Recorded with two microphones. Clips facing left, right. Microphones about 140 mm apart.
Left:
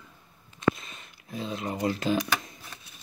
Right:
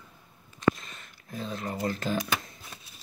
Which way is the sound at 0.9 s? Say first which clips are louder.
Left 2 dB; 15° left (ahead or behind).